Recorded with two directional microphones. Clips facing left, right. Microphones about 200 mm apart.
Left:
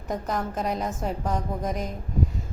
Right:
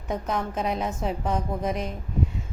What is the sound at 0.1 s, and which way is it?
A woman's voice, centre (ahead or behind).